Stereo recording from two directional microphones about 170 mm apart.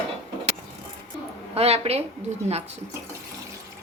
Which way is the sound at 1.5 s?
35° right (ahead or behind).